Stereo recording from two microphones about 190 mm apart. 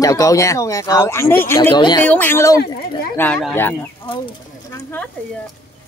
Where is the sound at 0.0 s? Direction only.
20° left (ahead or behind).